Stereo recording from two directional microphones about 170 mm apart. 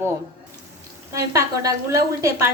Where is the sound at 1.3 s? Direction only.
20° right (ahead or behind).